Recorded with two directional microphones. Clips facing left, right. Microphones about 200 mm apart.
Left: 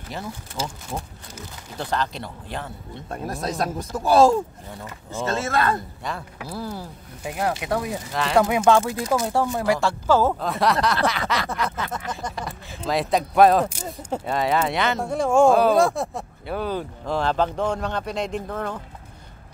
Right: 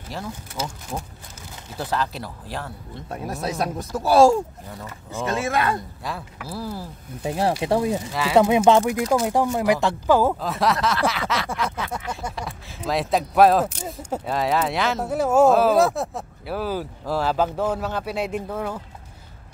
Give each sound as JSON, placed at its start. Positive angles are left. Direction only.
{"t": 0.9, "sound": "speech", "side_deg": 0}
{"t": 6.0, "sound": "speech", "side_deg": 0}
{"t": 7.2, "sound": "speech", "side_deg": -30}
{"t": 8.1, "sound": "speech", "side_deg": -5}
{"t": 8.4, "sound": "speech", "side_deg": -20}
{"t": 10.4, "sound": "speech", "side_deg": 0}